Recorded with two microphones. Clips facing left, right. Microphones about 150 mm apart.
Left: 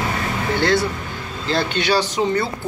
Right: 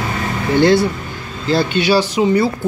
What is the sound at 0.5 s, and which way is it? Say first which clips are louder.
Speech: right 8 dB; 15° right (ahead or behind).